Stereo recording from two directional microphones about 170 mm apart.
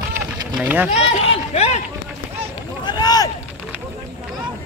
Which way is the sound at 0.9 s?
35° left (ahead or behind).